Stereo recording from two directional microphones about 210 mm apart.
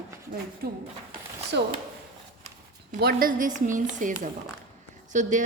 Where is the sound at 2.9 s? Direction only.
45° right (ahead or behind).